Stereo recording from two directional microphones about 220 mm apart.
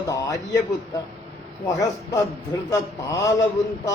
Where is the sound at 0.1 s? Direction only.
15° left (ahead or behind).